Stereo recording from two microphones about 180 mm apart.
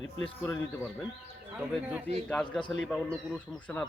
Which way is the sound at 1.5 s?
10° right (ahead or behind).